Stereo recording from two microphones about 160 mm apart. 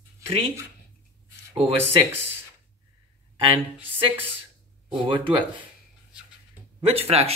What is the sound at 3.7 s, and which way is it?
Speech, 10° right (ahead or behind).